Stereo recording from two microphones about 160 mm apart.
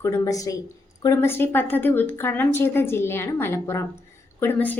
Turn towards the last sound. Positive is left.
turn(degrees=10)  # may be behind; listen again after turning